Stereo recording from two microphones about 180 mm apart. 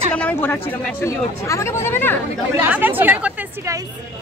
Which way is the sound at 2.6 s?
10° right (ahead or behind).